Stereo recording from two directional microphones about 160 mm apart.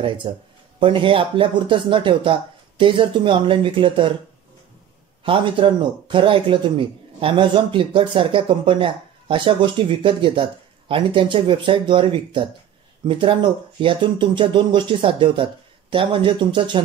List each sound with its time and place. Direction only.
0.2 s speech: 35° right (ahead or behind)
5.2 s speech: 30° right (ahead or behind)